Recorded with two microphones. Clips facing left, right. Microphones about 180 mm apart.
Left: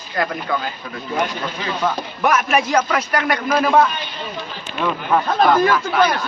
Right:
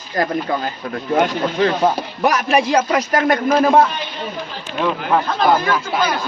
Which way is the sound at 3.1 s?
45° right (ahead or behind).